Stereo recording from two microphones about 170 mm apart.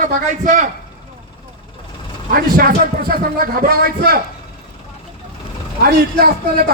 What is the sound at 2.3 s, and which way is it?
A man's voice, 60° right (ahead or behind).